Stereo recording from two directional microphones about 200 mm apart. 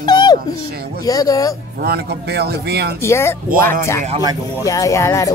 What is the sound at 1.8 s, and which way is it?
Speech, 55° right (ahead or behind).